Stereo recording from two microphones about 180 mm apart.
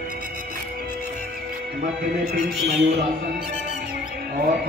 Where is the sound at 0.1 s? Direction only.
50° right (ahead or behind).